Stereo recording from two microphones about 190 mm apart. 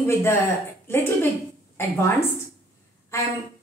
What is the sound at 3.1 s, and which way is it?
Speech, 15° left (ahead or behind).